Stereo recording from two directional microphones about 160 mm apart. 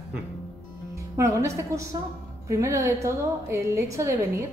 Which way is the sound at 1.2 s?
20° right (ahead or behind).